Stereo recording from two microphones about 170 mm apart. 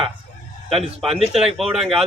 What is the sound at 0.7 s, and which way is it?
Speech, 35° right (ahead or behind).